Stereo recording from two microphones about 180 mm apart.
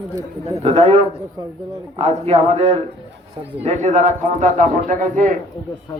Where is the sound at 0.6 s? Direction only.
35° right (ahead or behind).